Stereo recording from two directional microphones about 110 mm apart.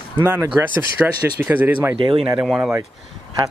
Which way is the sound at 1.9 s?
55° right (ahead or behind).